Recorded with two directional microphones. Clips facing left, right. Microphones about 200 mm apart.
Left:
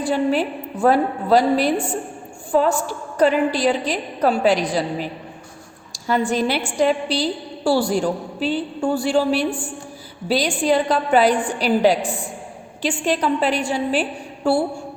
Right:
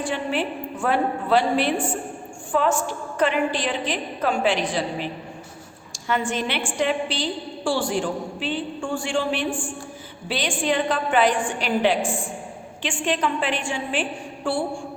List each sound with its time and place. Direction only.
0.0 s a woman's voice: 40° left (ahead or behind)